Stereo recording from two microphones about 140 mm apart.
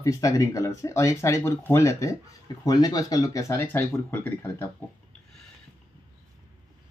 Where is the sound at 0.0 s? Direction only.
25° left (ahead or behind).